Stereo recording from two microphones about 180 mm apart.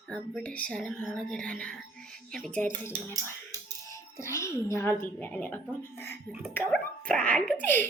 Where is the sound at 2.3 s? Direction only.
5° left (ahead or behind).